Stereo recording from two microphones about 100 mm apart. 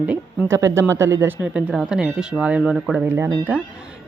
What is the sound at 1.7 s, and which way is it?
Speech, 5° right (ahead or behind).